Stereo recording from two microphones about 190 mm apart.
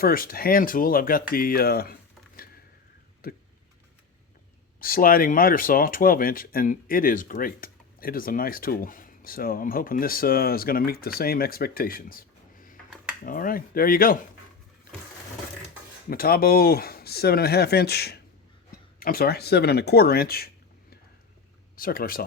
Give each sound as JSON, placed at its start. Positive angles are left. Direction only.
{"t": 0.0, "sound": "speech", "side_deg": 50}
{"t": 3.2, "sound": "tick-tock", "side_deg": 50}
{"t": 4.8, "sound": "speech", "side_deg": 50}
{"t": 16.0, "sound": "speech", "side_deg": 50}
{"t": 21.8, "sound": "speech", "side_deg": 50}